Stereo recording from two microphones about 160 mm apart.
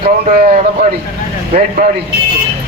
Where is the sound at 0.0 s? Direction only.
60° right (ahead or behind).